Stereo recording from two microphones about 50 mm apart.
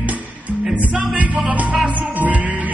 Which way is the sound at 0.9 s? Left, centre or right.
Centre.